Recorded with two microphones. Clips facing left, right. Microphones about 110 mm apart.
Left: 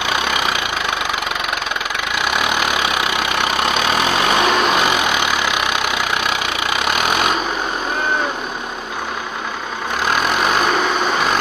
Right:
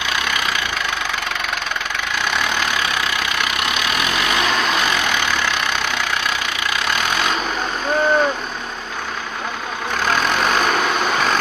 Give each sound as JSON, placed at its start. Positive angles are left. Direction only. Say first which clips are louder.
{"t": 0.1, "sound": "engine", "louder": "left 3 dB", "side_deg": 25}
{"t": 2.3, "sound": "vehicle", "louder": "left 3 dB", "side_deg": 15}
{"t": 6.8, "sound": "a sound", "louder": "left 3 dB", "side_deg": 20}
{"t": 10.0, "sound": "vehicle", "louder": "left 1 dB", "side_deg": 5}